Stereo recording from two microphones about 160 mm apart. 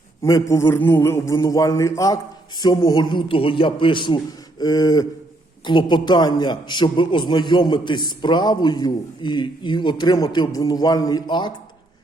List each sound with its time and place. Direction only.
0.2 s a man's voice: 20° left (ahead or behind)